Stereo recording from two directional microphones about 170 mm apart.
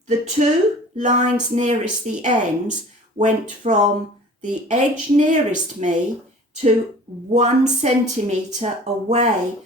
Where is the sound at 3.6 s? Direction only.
45° right (ahead or behind).